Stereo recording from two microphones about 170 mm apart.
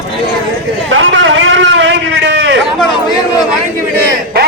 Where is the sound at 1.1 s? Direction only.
90° right.